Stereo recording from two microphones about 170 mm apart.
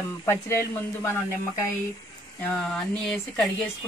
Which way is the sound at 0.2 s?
15° left (ahead or behind).